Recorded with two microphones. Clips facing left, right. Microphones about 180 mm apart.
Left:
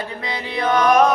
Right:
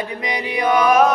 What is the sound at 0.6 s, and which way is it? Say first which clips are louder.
Music: even; 10° right (ahead or behind).